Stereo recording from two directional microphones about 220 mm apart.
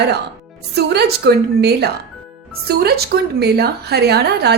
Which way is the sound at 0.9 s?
50° right (ahead or behind).